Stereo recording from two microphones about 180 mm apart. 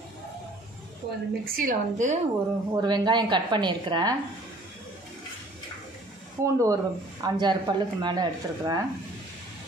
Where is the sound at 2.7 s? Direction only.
25° right (ahead or behind).